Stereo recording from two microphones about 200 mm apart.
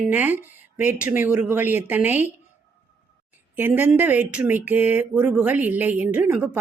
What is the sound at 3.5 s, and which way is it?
Speech, 10° right (ahead or behind).